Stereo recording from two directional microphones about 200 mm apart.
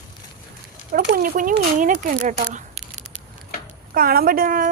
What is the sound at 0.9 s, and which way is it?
Speech, 45° right (ahead or behind).